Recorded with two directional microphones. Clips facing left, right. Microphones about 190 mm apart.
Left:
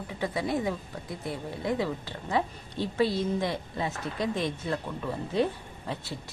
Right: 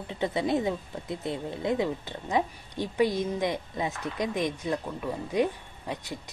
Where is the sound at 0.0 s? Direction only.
25° right (ahead or behind).